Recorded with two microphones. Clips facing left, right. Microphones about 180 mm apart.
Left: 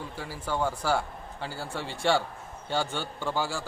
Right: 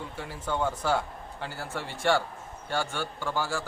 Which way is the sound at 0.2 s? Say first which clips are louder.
Even; 10° left (ahead or behind).